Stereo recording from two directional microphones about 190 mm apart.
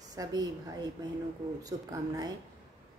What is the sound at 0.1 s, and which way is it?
Speech, 20° right (ahead or behind).